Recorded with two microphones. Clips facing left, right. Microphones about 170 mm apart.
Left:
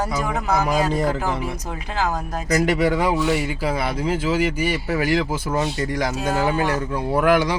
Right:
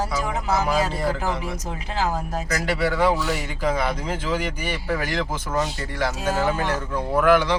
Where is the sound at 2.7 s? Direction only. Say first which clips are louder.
Right 2 dB; 15° left (ahead or behind).